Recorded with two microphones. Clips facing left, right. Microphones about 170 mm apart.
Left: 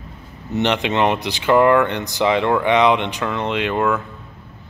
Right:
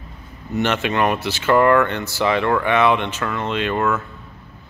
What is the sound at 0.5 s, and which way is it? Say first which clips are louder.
Speech: left 1 dB; 20° left (ahead or behind).